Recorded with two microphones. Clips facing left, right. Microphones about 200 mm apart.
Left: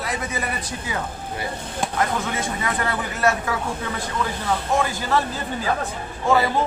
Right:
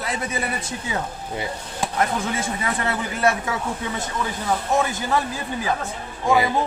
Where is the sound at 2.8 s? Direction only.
25° right (ahead or behind).